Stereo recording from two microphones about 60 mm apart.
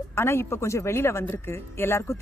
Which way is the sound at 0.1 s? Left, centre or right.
Left.